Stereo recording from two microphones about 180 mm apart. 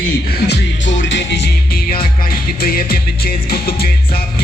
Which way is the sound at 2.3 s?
55° left (ahead or behind).